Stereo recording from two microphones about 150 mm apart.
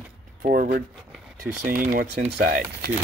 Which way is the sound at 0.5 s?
60° right (ahead or behind).